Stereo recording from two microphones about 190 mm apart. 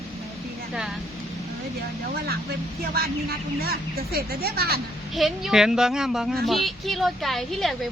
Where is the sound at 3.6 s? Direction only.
55° right (ahead or behind).